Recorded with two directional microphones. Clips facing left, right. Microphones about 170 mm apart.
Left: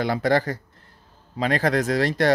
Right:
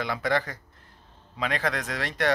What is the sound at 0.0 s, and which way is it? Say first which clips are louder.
Speech: left 6 dB; 40° left (ahead or behind).